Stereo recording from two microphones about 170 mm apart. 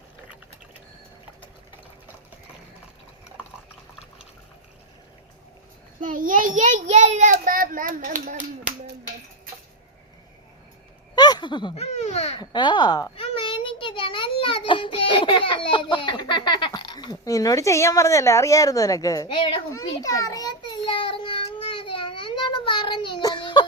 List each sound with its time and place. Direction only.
6.0 s a child's voice: 50° right (ahead or behind)
11.1 s speech: 25° left (ahead or behind)
12.4 s speech: 25° left (ahead or behind)
13.1 s a sound: 30° left (ahead or behind)